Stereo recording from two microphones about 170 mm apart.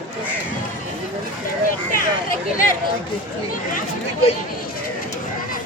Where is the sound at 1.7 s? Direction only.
55° left (ahead or behind).